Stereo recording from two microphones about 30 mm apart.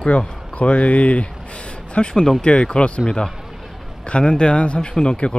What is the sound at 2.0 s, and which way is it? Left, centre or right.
Speech, left.